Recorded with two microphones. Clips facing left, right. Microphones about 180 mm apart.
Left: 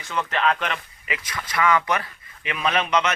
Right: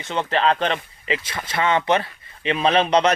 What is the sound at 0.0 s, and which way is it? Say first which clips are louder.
A man's voice: right 3 dB; 30° right (ahead or behind).